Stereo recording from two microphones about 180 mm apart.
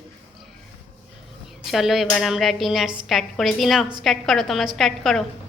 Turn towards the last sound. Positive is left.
turn(degrees=0)  # may be behind; listen again after turning